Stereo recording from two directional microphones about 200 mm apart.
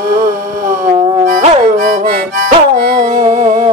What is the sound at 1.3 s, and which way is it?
Music, 45° right (ahead or behind).